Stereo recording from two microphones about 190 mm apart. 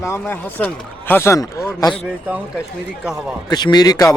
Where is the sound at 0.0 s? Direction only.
10° left (ahead or behind).